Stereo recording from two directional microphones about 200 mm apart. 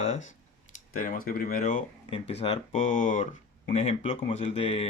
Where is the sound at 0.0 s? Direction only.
35° left (ahead or behind).